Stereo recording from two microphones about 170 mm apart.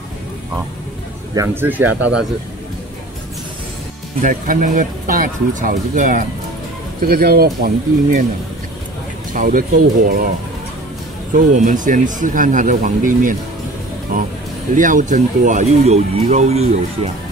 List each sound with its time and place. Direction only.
1.3 s speech: 15° right (ahead or behind)
4.2 s speech: 50° right (ahead or behind)
7.1 s speech: 65° right (ahead or behind)
9.3 s speech: 50° right (ahead or behind)
11.3 s speech: 50° right (ahead or behind)
14.7 s speech: 50° right (ahead or behind)